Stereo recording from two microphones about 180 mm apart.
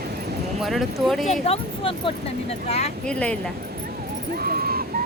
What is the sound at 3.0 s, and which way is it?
Speech, 5° left (ahead or behind).